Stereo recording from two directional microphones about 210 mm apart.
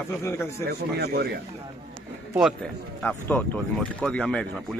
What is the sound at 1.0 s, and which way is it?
Speech, 50° right (ahead or behind).